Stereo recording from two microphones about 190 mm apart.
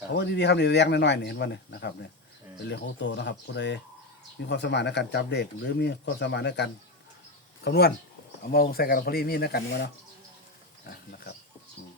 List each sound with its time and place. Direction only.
0.1 s speech: 65° left (ahead or behind)
10.8 s pig: 60° left (ahead or behind)